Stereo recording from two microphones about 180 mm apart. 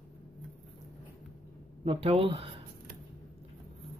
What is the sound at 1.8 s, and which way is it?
Speech, 30° right (ahead or behind).